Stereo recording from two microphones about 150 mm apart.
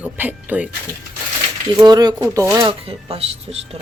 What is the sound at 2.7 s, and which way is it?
Speech, 40° right (ahead or behind).